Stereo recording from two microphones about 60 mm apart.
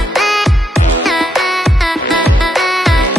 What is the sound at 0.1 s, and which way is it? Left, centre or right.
Music, centre.